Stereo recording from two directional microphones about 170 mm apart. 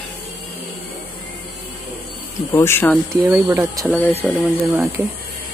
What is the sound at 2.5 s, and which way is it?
Speech, 15° left (ahead or behind).